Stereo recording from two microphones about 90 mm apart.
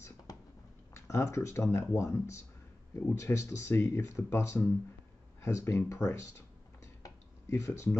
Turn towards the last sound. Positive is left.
turn(degrees=35)  # may be behind; listen again after turning